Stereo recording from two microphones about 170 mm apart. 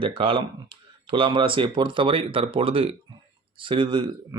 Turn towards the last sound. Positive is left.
turn(degrees=-30)  # may be behind; listen again after turning